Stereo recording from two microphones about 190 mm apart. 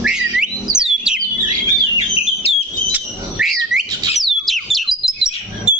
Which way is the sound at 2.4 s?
30° left (ahead or behind).